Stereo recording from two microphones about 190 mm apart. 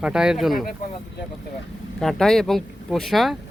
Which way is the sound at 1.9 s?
5° left (ahead or behind).